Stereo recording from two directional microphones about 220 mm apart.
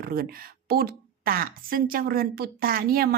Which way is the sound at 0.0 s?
40° right (ahead or behind).